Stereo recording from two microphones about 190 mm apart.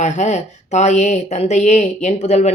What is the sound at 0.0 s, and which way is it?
Speech, 40° left (ahead or behind).